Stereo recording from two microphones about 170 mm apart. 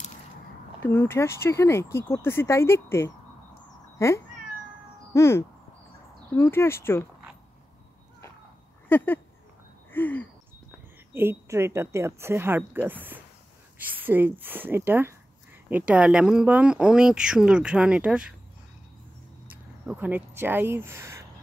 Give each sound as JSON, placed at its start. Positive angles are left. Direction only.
{"t": 0.8, "sound": "speech", "side_deg": 15}
{"t": 8.8, "sound": "speech", "side_deg": 10}
{"t": 11.1, "sound": "a woman's voice", "side_deg": -15}
{"t": 19.5, "sound": "speech", "side_deg": -10}